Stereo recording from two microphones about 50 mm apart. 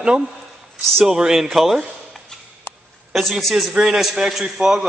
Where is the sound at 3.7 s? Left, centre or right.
Centre.